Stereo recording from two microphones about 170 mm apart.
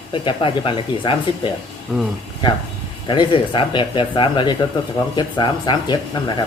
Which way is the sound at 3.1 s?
30° left (ahead or behind).